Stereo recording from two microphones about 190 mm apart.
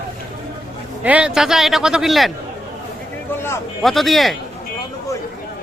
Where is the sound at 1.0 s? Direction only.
5° right (ahead or behind).